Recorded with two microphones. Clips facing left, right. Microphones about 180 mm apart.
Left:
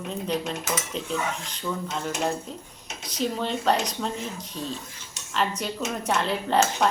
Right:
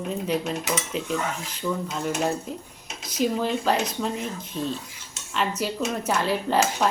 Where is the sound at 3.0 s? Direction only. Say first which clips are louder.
Right 3 dB; 5° right (ahead or behind).